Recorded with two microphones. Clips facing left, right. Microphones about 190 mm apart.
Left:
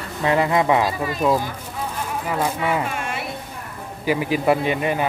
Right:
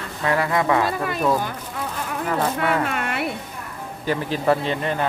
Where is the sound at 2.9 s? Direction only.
60° right (ahead or behind).